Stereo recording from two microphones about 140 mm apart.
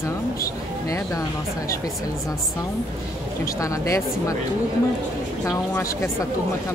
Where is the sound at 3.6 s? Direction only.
25° left (ahead or behind).